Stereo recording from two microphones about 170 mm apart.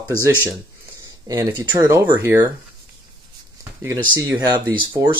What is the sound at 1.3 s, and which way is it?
Speech, 15° right (ahead or behind).